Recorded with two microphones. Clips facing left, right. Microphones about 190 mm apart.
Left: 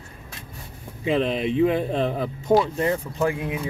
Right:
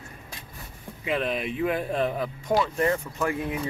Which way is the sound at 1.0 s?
30° left (ahead or behind).